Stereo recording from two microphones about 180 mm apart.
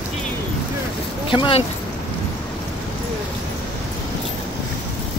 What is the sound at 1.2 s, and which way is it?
Speech, 30° left (ahead or behind).